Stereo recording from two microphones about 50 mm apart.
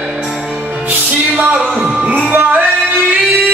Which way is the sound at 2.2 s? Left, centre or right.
Right.